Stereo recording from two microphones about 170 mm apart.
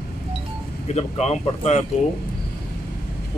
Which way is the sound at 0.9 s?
40° left (ahead or behind).